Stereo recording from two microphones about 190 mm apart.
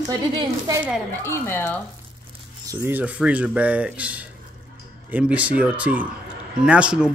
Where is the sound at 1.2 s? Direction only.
10° left (ahead or behind).